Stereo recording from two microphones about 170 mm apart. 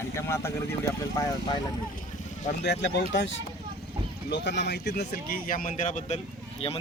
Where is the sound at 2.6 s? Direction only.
85° left; by 6.2 s 45° left (ahead or behind).